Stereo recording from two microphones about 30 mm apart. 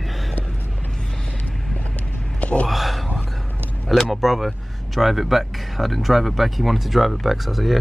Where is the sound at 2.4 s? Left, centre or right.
Left.